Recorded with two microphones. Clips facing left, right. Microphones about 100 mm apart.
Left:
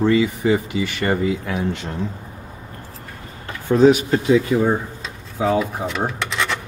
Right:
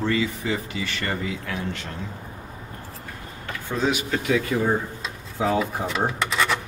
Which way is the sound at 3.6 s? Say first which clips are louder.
Left 11 dB; 40° left (ahead or behind).